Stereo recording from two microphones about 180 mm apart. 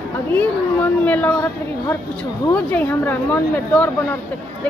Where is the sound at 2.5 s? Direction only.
10° left (ahead or behind).